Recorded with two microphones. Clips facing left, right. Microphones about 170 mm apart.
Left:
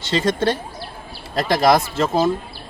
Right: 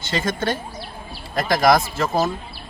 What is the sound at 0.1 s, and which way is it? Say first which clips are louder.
Speech: left 4 dB; 30° left (ahead or behind).